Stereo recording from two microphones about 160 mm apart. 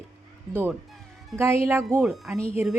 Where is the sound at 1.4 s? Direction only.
15° right (ahead or behind).